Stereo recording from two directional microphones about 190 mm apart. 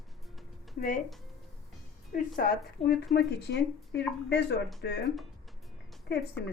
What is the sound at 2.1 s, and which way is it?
Speech, 45° left (ahead or behind).